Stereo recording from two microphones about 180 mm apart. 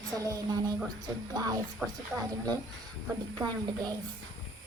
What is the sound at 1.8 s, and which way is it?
Speech, centre (ahead or behind).